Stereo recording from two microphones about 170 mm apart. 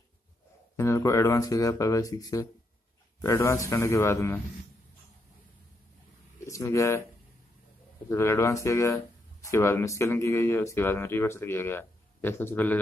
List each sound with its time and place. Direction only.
0.7 s speech: 15° left (ahead or behind)
6.4 s speech: 20° left (ahead or behind)
8.1 s speech: 15° left (ahead or behind)